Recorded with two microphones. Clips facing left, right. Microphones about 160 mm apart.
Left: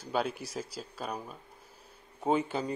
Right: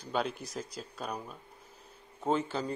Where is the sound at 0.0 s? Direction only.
5° left (ahead or behind).